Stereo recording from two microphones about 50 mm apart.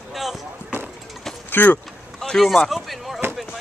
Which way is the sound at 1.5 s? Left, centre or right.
Left.